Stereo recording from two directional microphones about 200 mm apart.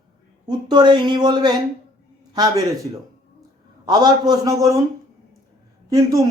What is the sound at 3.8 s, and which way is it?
Speech, 20° right (ahead or behind).